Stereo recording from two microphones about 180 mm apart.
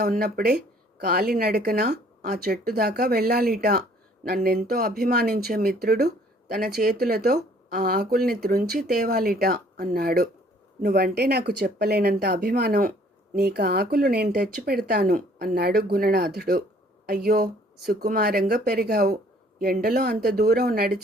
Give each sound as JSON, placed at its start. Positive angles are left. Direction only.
{"t": 0.0, "sound": "speech", "side_deg": -55}